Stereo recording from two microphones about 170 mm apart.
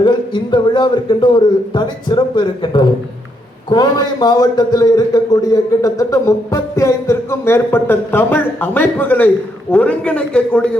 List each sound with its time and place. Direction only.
0.0 s a man's voice: 25° left (ahead or behind); by 10.7 s 5° left (ahead or behind)